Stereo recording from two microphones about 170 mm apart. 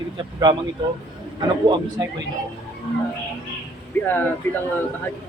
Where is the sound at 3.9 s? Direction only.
10° left (ahead or behind).